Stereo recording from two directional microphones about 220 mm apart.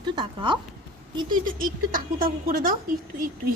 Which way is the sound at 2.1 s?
40° right (ahead or behind).